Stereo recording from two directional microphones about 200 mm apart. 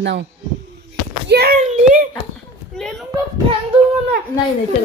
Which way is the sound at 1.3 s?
50° right (ahead or behind).